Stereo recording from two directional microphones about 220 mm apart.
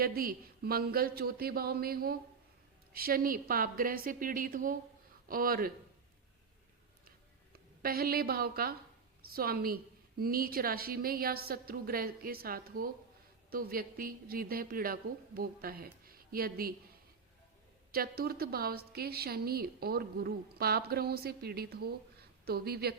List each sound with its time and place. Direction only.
0.0 s a woman's voice: 40° right (ahead or behind)
7.5 s a woman's voice: 45° right (ahead or behind)
17.9 s a woman's voice: 45° right (ahead or behind)